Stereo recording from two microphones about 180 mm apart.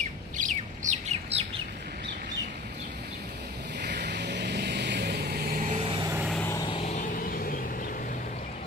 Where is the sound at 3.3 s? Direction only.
70° right (ahead or behind).